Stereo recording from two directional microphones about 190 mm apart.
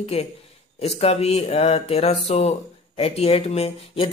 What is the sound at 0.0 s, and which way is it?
Speech, 30° left (ahead or behind).